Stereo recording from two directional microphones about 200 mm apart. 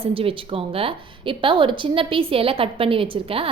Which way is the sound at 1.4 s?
25° right (ahead or behind).